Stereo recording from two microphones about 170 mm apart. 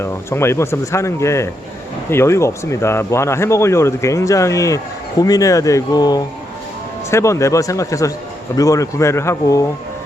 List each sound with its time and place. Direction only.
0.0 s speech: 15° left (ahead or behind)